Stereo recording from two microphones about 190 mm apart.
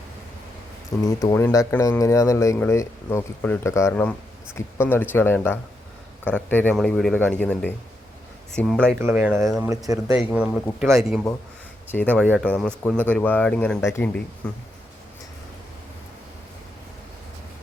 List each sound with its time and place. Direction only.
1.0 s speech: 15° left (ahead or behind)
9.0 s speech: 10° right (ahead or behind)
10.2 s speech: 5° right (ahead or behind)
11.9 s speech: 10° left (ahead or behind)